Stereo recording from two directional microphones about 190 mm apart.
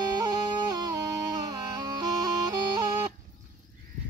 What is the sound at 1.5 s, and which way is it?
Music, 20° right (ahead or behind).